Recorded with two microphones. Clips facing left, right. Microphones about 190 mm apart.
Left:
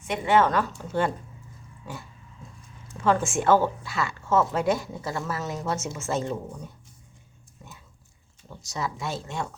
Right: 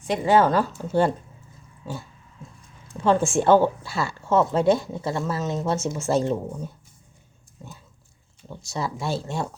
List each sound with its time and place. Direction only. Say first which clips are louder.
0.0 s speech: right 3 dB; 35° right (ahead or behind)
1.8 s pig: right 5 dB; 30° right (ahead or behind)
3.0 s speech: right 3 dB; 25° right (ahead or behind)
8.4 s speech: right 3 dB; 30° right (ahead or behind)